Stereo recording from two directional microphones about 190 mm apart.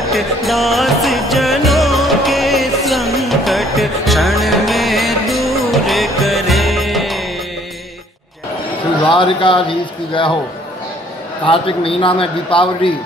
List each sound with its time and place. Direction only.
0.1 s music: centre (ahead or behind)
9.0 s speech: 25° left (ahead or behind)
11.4 s a man's voice: 30° left (ahead or behind)